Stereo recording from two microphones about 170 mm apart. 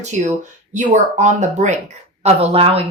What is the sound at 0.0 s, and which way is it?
A woman's voice, 45° right (ahead or behind).